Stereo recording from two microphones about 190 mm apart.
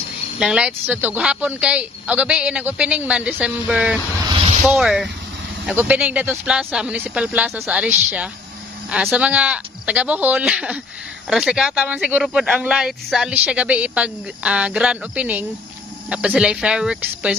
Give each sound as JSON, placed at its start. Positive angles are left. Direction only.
{"t": 0.4, "sound": "speech", "side_deg": -5}
{"t": 4.3, "sound": "a sound", "side_deg": -30}
{"t": 4.6, "sound": "speech", "side_deg": 0}
{"t": 8.9, "sound": "speech", "side_deg": -5}